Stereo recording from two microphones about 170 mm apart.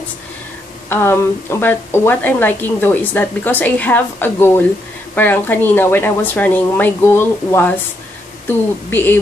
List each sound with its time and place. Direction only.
0.8 s a woman's voice: 15° left (ahead or behind)
8.9 s a woman's voice: 10° left (ahead or behind)